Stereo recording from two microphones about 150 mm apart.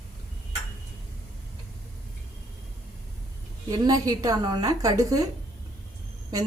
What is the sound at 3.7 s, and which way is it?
A woman's voice, 25° right (ahead or behind).